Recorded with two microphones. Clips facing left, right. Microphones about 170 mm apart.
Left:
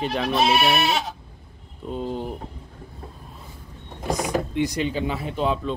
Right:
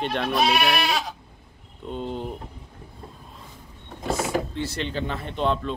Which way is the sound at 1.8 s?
5° left (ahead or behind).